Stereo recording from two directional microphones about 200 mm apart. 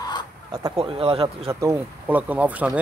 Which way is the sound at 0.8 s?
25° right (ahead or behind).